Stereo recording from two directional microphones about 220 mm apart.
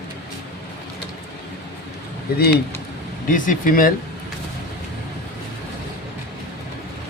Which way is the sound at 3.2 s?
35° left (ahead or behind).